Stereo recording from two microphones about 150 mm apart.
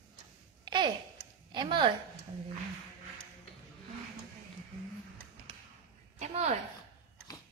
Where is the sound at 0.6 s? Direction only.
30° right (ahead or behind).